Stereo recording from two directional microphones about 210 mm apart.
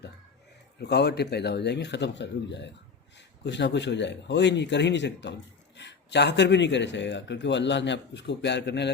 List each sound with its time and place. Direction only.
0.8 s speech: 50° left (ahead or behind)